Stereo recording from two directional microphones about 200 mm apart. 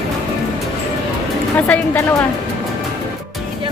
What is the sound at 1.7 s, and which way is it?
Speech, 10° left (ahead or behind).